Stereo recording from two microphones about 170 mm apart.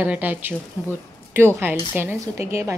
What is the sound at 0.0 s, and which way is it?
Speech, 10° right (ahead or behind).